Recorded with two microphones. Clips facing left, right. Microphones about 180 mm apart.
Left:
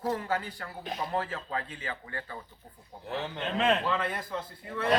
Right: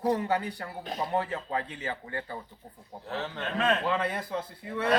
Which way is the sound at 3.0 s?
15° left (ahead or behind).